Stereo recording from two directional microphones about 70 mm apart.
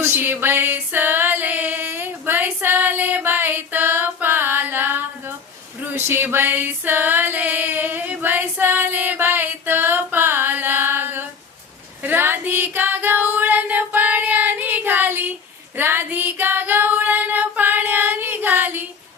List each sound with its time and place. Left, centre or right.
0.0 s a sound: right
5.8 s music: right
12.0 s female singing: right